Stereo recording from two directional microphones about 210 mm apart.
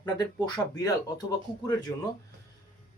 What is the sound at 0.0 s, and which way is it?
Speech, 20° left (ahead or behind).